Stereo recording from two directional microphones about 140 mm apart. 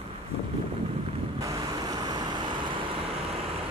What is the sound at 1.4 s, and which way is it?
Vehicle, 25° right (ahead or behind).